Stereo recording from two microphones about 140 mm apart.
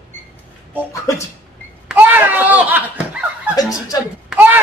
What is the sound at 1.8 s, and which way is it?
Speech, 15° right (ahead or behind).